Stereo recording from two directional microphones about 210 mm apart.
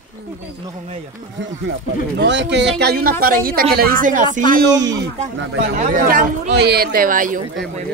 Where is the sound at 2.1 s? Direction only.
55° right (ahead or behind); by 4.3 s 40° right (ahead or behind).